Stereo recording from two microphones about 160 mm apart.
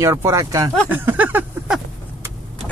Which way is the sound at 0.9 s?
10° right (ahead or behind).